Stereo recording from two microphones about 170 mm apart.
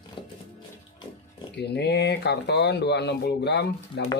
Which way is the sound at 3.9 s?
90° left.